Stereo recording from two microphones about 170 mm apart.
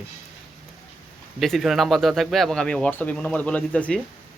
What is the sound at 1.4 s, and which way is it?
Speech, centre (ahead or behind).